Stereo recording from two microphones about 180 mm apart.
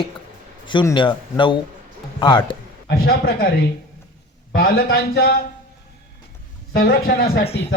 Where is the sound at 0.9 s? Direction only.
30° left (ahead or behind).